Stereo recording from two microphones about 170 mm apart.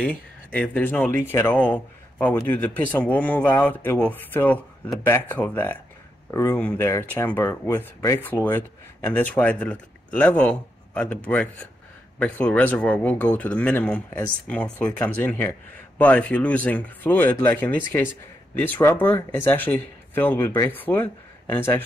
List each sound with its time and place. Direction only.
0.0 s speech: 5° left (ahead or behind)
12.2 s speech: 10° left (ahead or behind)